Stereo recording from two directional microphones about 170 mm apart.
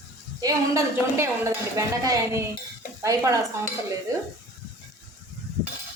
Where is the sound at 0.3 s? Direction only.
20° right (ahead or behind).